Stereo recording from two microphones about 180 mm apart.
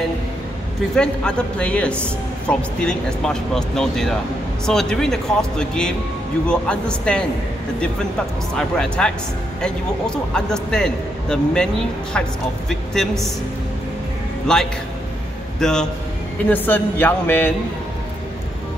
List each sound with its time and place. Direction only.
0.9 s a man's voice: 5° left (ahead or behind)
8.5 s a man's voice: 5° left (ahead or behind)
14.5 s a man's voice: 5° left (ahead or behind)